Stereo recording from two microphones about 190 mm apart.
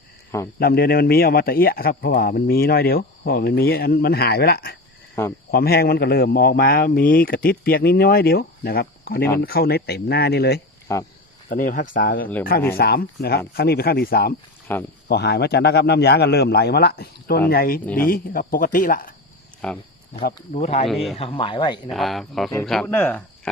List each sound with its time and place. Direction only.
0.6 s a man's voice: 55° left (ahead or behind)
10.9 s speech: 15° left (ahead or behind)
11.4 s a man's voice: 45° left (ahead or behind)
14.7 s speech: 10° left (ahead or behind)
15.0 s a man's voice: 60° left (ahead or behind)
19.6 s speech: 5° left (ahead or behind)
20.5 s speech: 35° left (ahead or behind)
20.8 s speech: centre (ahead or behind)
21.2 s speech: 30° left (ahead or behind)
21.8 s speech: centre (ahead or behind)